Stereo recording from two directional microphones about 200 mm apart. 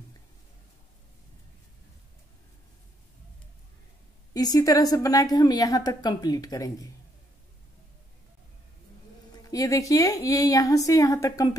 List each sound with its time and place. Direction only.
4.3 s a woman's voice: 20° left (ahead or behind)
9.3 s a woman's voice: 15° left (ahead or behind)